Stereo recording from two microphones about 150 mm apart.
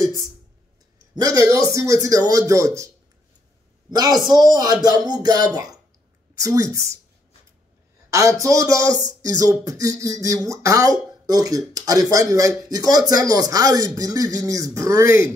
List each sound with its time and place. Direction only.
0.9 s speech: 25° right (ahead or behind)
3.9 s speech: 25° right (ahead or behind)
8.1 s speech: 20° right (ahead or behind)